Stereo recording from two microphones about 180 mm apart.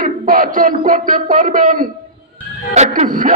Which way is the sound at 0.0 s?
50° right (ahead or behind).